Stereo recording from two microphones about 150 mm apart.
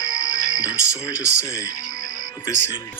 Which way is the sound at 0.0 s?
20° left (ahead or behind).